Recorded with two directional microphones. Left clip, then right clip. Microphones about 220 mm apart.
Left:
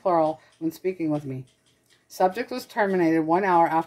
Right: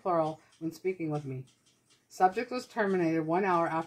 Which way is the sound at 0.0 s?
45° left (ahead or behind).